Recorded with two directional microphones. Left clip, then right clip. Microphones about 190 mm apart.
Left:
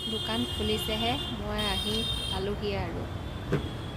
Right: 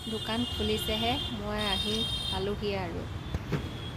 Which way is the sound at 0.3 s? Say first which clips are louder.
Right 2 dB; centre (ahead or behind).